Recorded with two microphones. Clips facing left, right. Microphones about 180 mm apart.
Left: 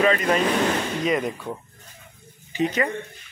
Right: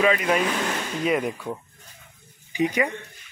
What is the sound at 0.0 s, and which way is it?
Speech, 10° right (ahead or behind).